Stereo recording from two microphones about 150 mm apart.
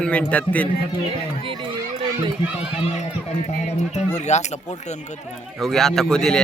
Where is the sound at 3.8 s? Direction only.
50° left (ahead or behind).